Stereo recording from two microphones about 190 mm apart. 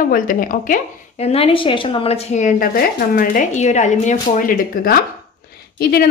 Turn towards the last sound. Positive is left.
turn(degrees=50)  # may be behind; listen again after turning